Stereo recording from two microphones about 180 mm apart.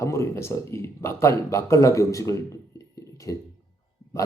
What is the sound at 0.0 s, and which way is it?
Speech, 15° left (ahead or behind).